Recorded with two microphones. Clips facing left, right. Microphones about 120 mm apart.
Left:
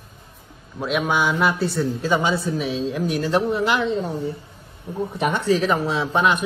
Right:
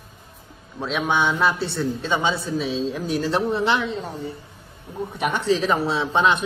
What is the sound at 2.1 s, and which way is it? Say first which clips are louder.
Speech: left 3 dB; 25° right (ahead or behind).